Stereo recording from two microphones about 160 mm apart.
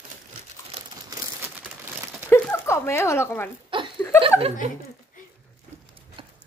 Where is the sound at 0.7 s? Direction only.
40° right (ahead or behind).